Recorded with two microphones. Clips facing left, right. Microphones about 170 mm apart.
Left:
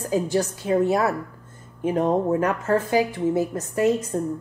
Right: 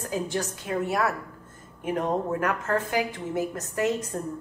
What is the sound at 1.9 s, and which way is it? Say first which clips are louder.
A woman's voice: left 6 dB; 20° left (ahead or behind).